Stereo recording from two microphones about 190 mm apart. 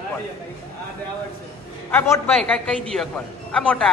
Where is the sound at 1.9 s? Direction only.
10° left (ahead or behind).